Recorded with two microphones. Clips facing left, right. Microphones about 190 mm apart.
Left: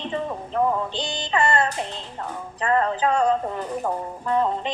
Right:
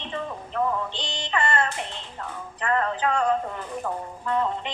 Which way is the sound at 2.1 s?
30° left (ahead or behind).